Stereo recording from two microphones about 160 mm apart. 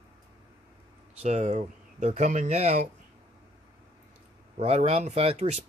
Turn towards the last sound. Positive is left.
turn(degrees=-40)  # may be behind; listen again after turning